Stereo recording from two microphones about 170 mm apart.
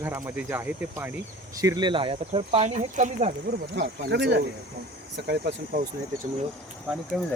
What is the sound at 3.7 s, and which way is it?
Speech, 80° right.